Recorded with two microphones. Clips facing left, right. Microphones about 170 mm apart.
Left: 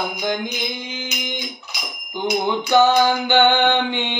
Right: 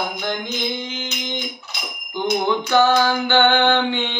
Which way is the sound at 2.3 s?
15° left (ahead or behind).